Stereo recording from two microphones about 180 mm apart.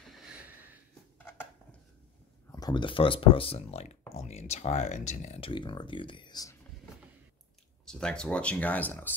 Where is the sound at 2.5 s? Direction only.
20° left (ahead or behind).